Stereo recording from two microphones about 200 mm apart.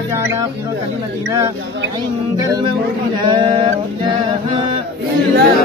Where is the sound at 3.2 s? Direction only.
20° right (ahead or behind).